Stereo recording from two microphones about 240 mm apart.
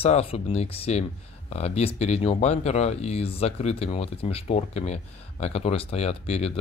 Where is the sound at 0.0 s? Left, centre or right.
Left.